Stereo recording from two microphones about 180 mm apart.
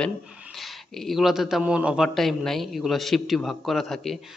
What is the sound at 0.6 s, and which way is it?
A man's voice, centre (ahead or behind).